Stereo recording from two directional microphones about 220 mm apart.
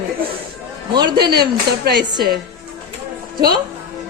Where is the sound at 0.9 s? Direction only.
20° right (ahead or behind).